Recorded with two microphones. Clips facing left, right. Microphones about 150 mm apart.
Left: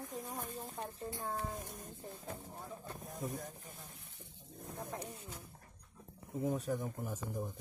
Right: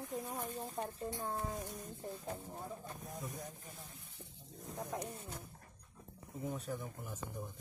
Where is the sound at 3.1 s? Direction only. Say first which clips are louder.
Left 6 dB; 45° left (ahead or behind).